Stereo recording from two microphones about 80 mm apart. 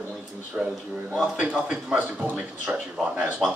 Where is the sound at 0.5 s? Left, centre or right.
Centre.